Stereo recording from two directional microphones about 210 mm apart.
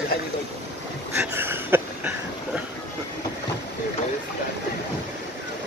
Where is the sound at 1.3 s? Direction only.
10° right (ahead or behind).